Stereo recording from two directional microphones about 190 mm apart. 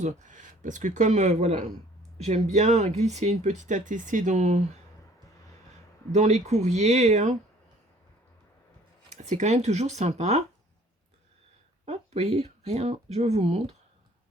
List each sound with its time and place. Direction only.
0.0 s speech: 40° right (ahead or behind)
6.1 s speech: 40° right (ahead or behind)
9.2 s speech: 40° right (ahead or behind)
11.9 s speech: 35° right (ahead or behind)